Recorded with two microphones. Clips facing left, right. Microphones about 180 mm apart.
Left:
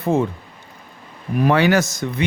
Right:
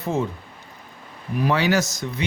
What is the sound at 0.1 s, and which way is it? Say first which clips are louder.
Speech: left 5 dB; 55° left (ahead or behind).